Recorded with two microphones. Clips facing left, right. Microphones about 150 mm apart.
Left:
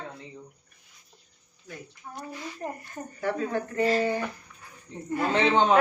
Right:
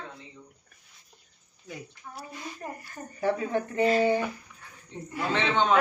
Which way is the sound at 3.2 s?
20° right (ahead or behind).